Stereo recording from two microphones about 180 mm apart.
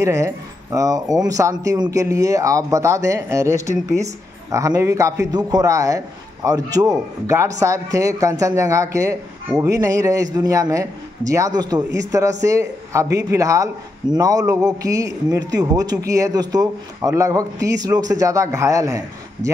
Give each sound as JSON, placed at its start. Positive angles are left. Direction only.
{"t": 0.0, "sound": "speech", "side_deg": -15}